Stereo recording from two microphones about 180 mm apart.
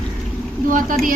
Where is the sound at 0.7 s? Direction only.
50° right (ahead or behind).